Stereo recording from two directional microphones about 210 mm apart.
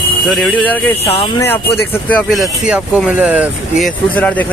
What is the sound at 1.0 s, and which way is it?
Speech, 25° left (ahead or behind).